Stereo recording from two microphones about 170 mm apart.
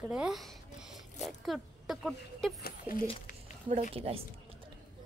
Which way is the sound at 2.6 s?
60° left (ahead or behind).